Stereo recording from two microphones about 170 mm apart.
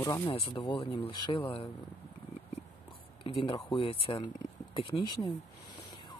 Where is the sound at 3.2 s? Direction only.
30° left (ahead or behind).